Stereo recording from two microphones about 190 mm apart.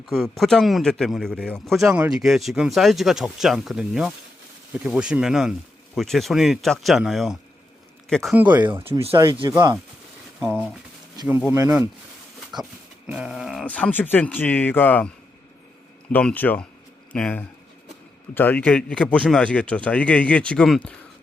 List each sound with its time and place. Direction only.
0.1 s a man's voice: centre (ahead or behind)
8.8 s speech: 30° right (ahead or behind)
11.3 s speech: 10° right (ahead or behind)
13.1 s speech: 5° right (ahead or behind)
16.1 s speech: 10° left (ahead or behind)